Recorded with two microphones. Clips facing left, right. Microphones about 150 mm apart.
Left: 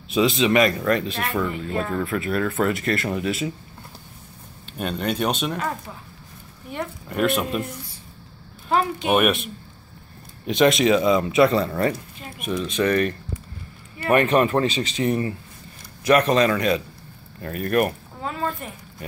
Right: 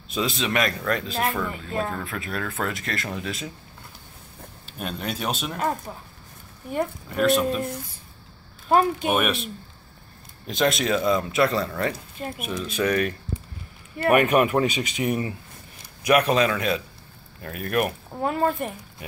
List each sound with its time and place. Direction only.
0.1 s speech: centre (ahead or behind)
4.7 s speech: centre (ahead or behind)
7.1 s speech: centre (ahead or behind)
8.6 s speech: 45° right (ahead or behind)
9.2 s speech: centre (ahead or behind)
14.1 s speech: 10° right (ahead or behind)
18.2 s speech: 55° right (ahead or behind)